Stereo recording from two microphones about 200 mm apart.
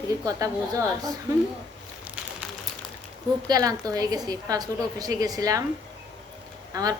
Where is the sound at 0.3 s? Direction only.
15° right (ahead or behind).